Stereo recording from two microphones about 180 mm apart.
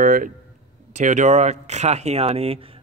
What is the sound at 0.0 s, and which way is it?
Speech, 50° right (ahead or behind).